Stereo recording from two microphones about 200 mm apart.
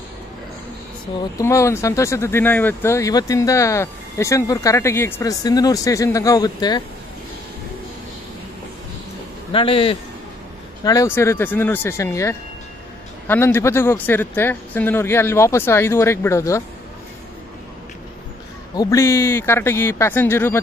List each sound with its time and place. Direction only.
1.4 s speech: 15° left (ahead or behind)
9.5 s speech: 25° left (ahead or behind)
10.8 s speech: 15° left (ahead or behind)
18.8 s speech: 15° left (ahead or behind)